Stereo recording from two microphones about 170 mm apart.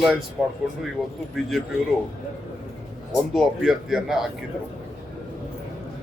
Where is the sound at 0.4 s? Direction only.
15° right (ahead or behind).